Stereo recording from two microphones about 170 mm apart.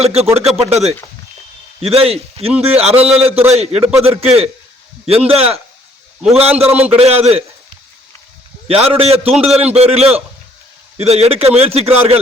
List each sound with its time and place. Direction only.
0.0 s a man's voice: 40° right (ahead or behind)
8.6 s a man's voice: 35° right (ahead or behind)